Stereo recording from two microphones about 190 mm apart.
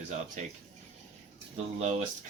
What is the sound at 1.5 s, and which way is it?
Speech, 35° right (ahead or behind).